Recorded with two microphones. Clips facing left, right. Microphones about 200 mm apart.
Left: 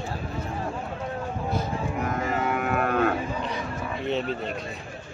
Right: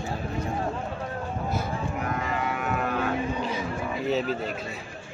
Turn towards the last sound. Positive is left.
turn(degrees=0)  # may be behind; listen again after turning